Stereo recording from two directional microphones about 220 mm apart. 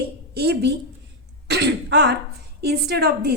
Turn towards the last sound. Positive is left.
turn(degrees=-45)  # may be behind; listen again after turning